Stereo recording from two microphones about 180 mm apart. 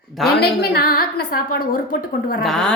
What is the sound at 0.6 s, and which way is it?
Speech, 55° left (ahead or behind).